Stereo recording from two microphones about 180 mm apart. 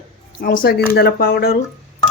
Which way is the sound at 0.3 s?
50° left (ahead or behind).